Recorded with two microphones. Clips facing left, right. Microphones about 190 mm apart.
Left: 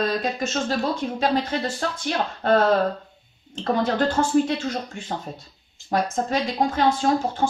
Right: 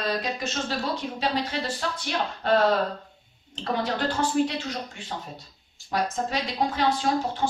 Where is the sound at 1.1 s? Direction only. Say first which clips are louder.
Left 6 dB; 50° left (ahead or behind).